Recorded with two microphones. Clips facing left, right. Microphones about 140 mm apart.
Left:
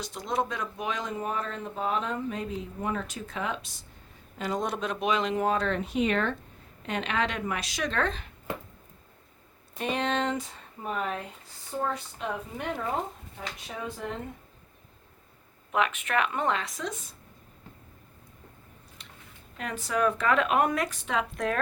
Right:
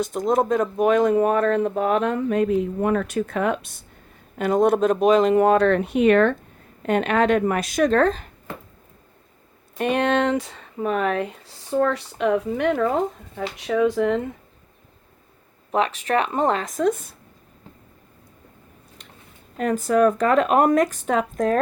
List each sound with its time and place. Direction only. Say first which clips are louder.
0.0 s speech: right 10 dB; 50° right (ahead or behind)
5.4 s speech: right 10 dB; 60° right (ahead or behind); by 8.3 s 45° right (ahead or behind)
9.7 s speech: right 8 dB; 60° right (ahead or behind); by 14.3 s 90° right
15.7 s speech: right 6 dB; 35° right (ahead or behind); by 17.1 s 55° right (ahead or behind)
19.5 s speech: right 11 dB; 45° right (ahead or behind)